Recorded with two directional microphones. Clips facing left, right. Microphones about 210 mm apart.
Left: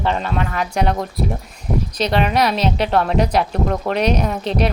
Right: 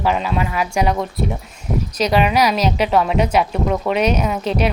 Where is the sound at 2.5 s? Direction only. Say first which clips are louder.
Right 1 dB; 30° left (ahead or behind).